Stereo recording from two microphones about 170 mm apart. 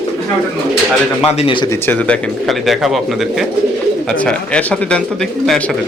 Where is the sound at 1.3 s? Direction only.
30° left (ahead or behind).